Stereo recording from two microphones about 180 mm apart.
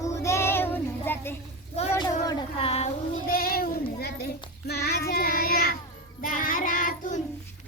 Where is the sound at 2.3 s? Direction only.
30° left (ahead or behind).